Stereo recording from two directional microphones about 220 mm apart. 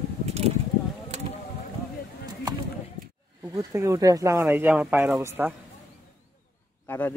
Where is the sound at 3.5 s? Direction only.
15° right (ahead or behind).